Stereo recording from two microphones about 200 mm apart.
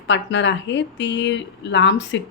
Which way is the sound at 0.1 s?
65° left (ahead or behind).